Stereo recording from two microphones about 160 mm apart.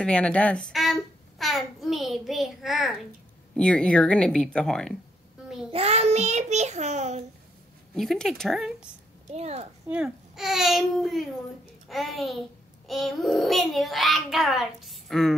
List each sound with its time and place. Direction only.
0.0 s a woman's voice: 5° left (ahead or behind)
5.7 s a child's voice: 40° right (ahead or behind)
7.9 s a child's voice: centre (ahead or behind)
9.3 s a child's voice: 40° right (ahead or behind)
9.8 s a child's voice: 5° right (ahead or behind)